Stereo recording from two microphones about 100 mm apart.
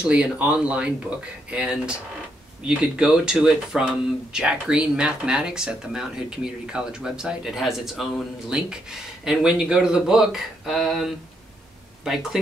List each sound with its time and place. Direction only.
0.0 s speech: 10° right (ahead or behind)